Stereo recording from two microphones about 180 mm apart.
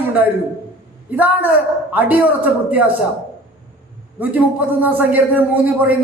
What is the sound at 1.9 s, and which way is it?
Speech, 10° right (ahead or behind).